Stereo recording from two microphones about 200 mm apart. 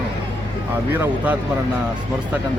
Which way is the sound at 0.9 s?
10° right (ahead or behind).